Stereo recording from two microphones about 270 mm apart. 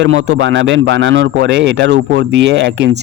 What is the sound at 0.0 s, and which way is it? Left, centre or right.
A man's voice, right.